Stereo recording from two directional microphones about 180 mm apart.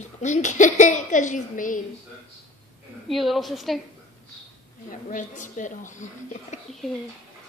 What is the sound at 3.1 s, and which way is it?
Speech, centre (ahead or behind).